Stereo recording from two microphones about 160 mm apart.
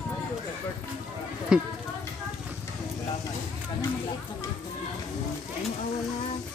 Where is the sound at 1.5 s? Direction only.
5° right (ahead or behind).